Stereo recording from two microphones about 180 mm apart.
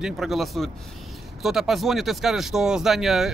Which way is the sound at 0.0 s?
Centre (ahead or behind).